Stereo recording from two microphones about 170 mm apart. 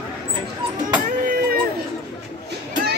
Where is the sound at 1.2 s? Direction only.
60° right (ahead or behind).